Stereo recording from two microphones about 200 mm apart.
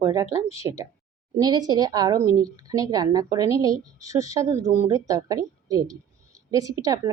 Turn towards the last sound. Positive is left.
turn(degrees=-15)  # may be behind; listen again after turning